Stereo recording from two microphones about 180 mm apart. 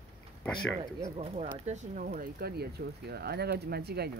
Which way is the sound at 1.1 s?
35° right (ahead or behind).